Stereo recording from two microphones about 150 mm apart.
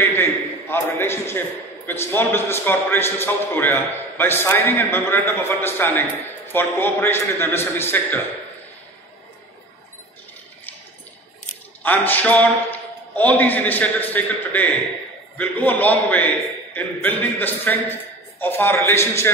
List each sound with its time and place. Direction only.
0.0 s a sound: 15° left (ahead or behind)
1.9 s a man's voice: 15° left (ahead or behind)
11.8 s a man's voice: 10° left (ahead or behind)